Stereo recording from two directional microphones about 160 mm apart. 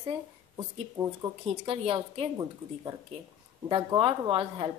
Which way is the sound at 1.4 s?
35° right (ahead or behind).